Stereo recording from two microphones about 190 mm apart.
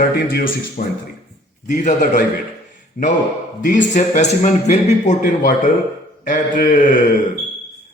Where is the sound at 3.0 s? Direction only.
50° left (ahead or behind).